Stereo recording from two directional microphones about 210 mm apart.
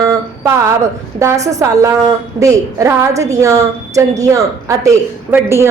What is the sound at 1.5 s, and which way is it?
A woman's voice, 15° right (ahead or behind).